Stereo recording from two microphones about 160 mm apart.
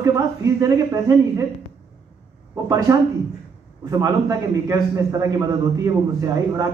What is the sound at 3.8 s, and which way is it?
Speech, 20° right (ahead or behind).